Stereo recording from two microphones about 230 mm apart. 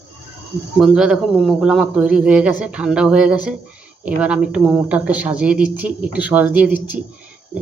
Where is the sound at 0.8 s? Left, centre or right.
Centre.